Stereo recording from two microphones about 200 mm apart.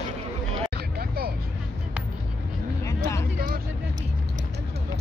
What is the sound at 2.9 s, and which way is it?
Vehicle, 15° left (ahead or behind).